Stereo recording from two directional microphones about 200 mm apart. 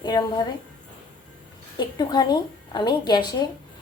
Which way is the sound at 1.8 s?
20° left (ahead or behind).